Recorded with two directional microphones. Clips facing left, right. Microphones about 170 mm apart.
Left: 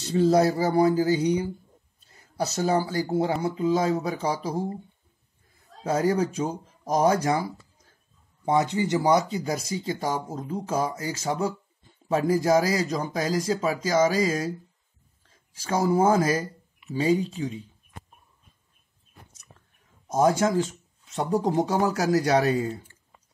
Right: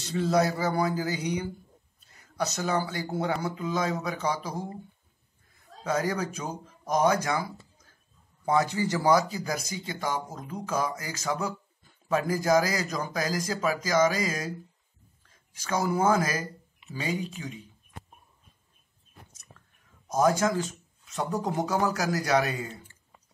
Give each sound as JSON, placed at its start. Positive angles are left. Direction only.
{"t": 0.0, "sound": "speech", "side_deg": 35}
{"t": 5.9, "sound": "speech", "side_deg": 30}
{"t": 8.5, "sound": "speech", "side_deg": 20}
{"t": 20.1, "sound": "speech", "side_deg": 25}